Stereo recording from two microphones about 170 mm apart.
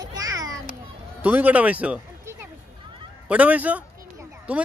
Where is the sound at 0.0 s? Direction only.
20° right (ahead or behind).